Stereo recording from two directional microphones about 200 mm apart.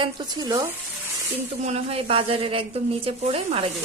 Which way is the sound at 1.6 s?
30° right (ahead or behind).